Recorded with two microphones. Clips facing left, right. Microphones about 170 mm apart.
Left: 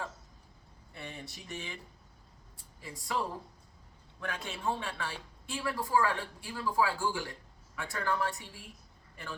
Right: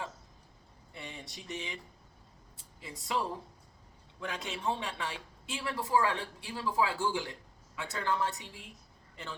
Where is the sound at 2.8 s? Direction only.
20° right (ahead or behind).